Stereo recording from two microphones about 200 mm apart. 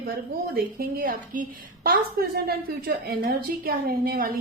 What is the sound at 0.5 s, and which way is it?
A woman's voice, 45° right (ahead or behind).